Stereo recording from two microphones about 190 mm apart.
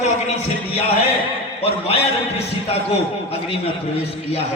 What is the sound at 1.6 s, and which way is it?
A man's voice, 30° left (ahead or behind).